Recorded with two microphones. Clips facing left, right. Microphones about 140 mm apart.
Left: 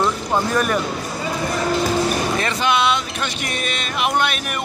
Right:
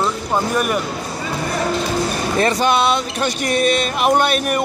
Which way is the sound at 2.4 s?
40° right (ahead or behind).